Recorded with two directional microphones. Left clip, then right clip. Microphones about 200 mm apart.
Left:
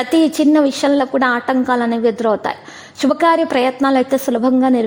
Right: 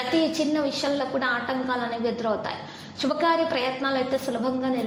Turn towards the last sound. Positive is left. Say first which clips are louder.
# left 11 dB
turn(degrees=45)  # may be behind; listen again after turning